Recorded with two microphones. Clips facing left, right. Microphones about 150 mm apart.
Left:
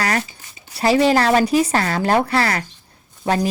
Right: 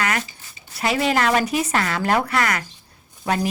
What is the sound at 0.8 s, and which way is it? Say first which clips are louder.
Speech: left 5 dB; 30° left (ahead or behind).